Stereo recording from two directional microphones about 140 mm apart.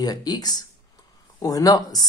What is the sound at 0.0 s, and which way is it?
Speech, 30° left (ahead or behind).